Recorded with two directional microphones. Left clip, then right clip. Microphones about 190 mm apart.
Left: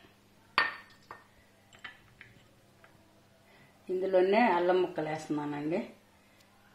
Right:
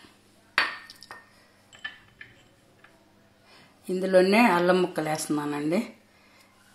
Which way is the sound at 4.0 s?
50° right (ahead or behind).